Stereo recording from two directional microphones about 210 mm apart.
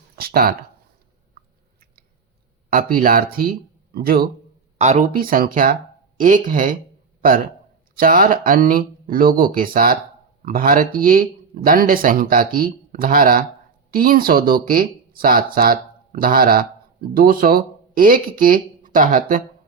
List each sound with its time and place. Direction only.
0.2 s a sound: 45° right (ahead or behind)
2.6 s speech: 40° right (ahead or behind)
4.8 s a man's voice: 35° right (ahead or behind)